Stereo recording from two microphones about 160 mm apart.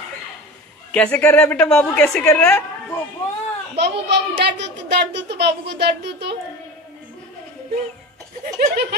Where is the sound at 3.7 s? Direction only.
90° right.